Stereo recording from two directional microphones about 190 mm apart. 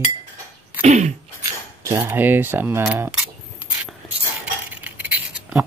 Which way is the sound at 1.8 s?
15° right (ahead or behind).